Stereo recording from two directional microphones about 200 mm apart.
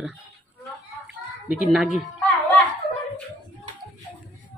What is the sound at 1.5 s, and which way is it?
Speech, 5° right (ahead or behind).